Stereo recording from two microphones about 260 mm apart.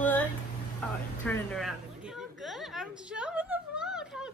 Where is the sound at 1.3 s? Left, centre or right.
Centre.